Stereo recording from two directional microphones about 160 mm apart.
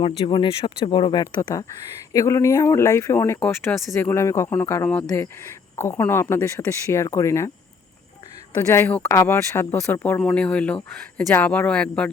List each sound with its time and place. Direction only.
0.3 s speech: 30° left (ahead or behind)
8.5 s speech: 15° left (ahead or behind)